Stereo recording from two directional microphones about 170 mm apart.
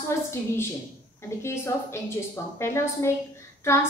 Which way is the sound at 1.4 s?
15° left (ahead or behind).